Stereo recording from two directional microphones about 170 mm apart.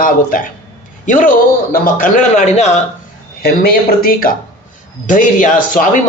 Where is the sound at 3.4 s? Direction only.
60° left (ahead or behind).